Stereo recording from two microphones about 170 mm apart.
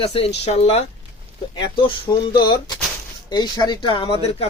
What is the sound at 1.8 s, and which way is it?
Speech, 25° left (ahead or behind).